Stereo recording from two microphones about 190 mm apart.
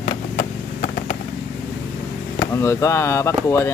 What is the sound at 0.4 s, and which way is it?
Vehicle, 45° left (ahead or behind).